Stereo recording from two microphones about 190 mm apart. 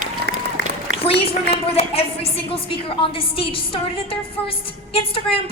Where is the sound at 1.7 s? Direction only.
30° left (ahead or behind).